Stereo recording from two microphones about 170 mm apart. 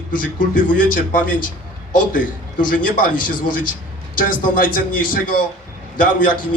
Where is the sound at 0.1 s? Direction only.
50° left (ahead or behind).